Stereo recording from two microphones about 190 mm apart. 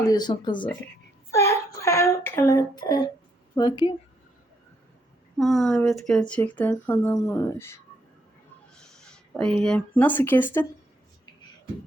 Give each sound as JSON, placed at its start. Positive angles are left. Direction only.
{"t": 0.0, "sound": "speech", "side_deg": 20}
{"t": 1.3, "sound": "a sound", "side_deg": 15}
{"t": 3.5, "sound": "speech", "side_deg": 20}
{"t": 5.4, "sound": "speech", "side_deg": 0}
{"t": 8.7, "sound": "speech", "side_deg": 5}